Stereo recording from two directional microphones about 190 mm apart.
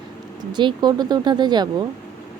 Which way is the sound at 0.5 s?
20° right (ahead or behind).